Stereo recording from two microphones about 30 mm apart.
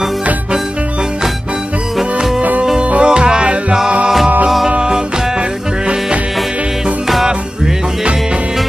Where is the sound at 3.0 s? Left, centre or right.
Right.